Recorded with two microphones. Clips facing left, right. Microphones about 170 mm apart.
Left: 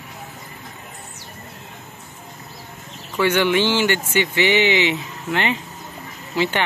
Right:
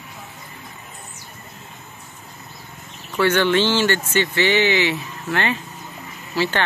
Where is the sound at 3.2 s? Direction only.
15° left (ahead or behind).